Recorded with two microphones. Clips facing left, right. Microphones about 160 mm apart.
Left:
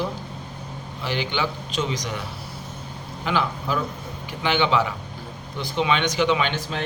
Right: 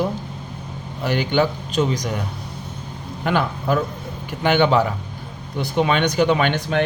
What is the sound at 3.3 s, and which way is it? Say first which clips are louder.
A man's voice: right 4 dB; 55° right (ahead or behind).